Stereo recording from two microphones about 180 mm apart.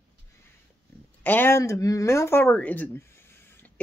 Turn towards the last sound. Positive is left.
turn(degrees=10)  # may be behind; listen again after turning